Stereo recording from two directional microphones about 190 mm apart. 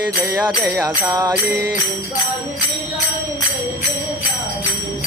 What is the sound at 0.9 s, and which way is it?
Music, 20° right (ahead or behind).